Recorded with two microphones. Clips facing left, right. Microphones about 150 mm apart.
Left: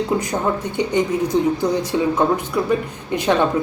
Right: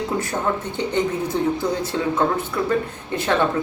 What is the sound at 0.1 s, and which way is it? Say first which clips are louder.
A woman's voice: left 2 dB; 20° left (ahead or behind).